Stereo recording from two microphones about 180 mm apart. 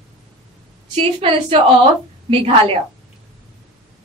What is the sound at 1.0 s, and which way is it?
A woman's voice, 30° right (ahead or behind).